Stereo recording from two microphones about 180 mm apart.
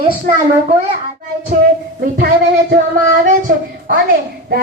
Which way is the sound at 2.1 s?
60° right (ahead or behind).